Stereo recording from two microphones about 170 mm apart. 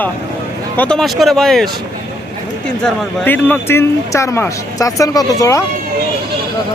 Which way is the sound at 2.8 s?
10° left (ahead or behind).